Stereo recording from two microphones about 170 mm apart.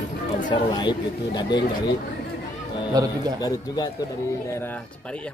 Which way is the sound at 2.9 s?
25° right (ahead or behind).